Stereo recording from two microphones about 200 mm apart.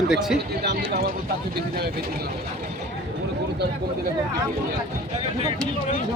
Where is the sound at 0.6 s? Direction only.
50° right (ahead or behind).